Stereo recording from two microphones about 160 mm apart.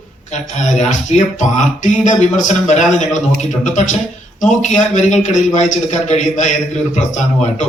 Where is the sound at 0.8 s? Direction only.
50° left (ahead or behind).